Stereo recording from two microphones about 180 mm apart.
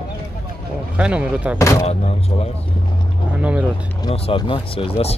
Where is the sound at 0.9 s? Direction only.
5° right (ahead or behind).